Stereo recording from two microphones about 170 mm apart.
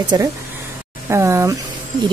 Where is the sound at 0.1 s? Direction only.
20° right (ahead or behind).